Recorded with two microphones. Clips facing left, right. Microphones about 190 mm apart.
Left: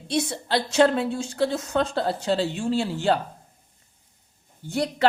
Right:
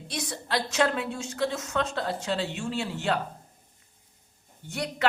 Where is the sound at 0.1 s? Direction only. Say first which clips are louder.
Left 6 dB; 30° left (ahead or behind).